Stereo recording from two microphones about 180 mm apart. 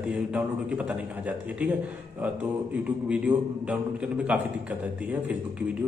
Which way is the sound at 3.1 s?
5° right (ahead or behind).